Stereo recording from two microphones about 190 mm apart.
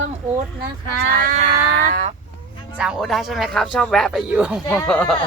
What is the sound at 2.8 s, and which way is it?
Speech, centre (ahead or behind).